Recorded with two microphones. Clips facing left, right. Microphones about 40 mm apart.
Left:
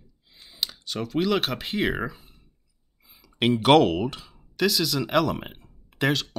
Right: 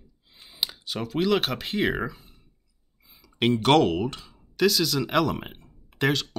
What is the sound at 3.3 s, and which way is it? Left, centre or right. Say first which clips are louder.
Speech: left 2 dB; centre.